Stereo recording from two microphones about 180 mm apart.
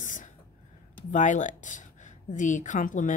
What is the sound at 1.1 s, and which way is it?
A woman's voice, 45° left (ahead or behind).